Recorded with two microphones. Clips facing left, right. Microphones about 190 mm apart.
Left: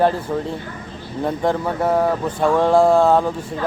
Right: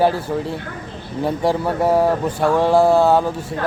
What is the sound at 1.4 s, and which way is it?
Speech, 10° right (ahead or behind).